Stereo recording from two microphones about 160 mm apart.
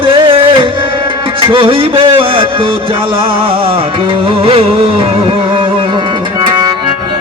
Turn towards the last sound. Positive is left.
turn(degrees=-30)  # may be behind; listen again after turning